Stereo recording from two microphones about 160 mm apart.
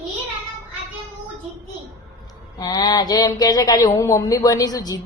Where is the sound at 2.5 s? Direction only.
25° left (ahead or behind).